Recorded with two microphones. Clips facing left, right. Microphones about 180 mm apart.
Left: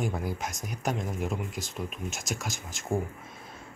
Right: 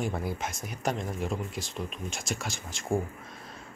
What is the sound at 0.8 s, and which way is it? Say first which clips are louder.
Speech: even; centre (ahead or behind).